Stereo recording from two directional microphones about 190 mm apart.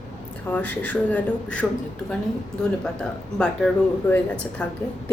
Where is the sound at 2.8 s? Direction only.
5° left (ahead or behind).